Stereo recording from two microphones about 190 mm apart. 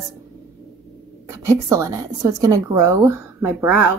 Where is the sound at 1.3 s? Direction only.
15° right (ahead or behind).